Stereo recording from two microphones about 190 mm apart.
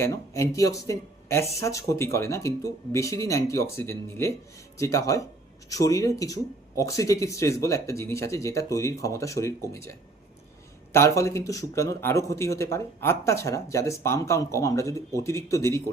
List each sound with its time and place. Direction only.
0.0 s speech: 15° left (ahead or behind)
10.9 s speech: 15° left (ahead or behind)